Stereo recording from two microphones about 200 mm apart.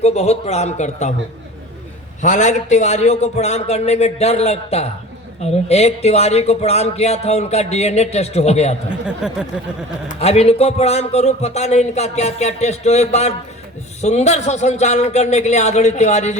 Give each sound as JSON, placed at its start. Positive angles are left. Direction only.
{"t": 0.0, "sound": "speech", "side_deg": 30}
{"t": 2.2, "sound": "speech", "side_deg": 35}
{"t": 8.9, "sound": "speech", "side_deg": -5}
{"t": 10.1, "sound": "speech", "side_deg": 30}